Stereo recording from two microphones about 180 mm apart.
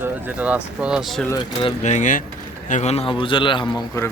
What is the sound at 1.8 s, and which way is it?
A man's voice, 40° left (ahead or behind).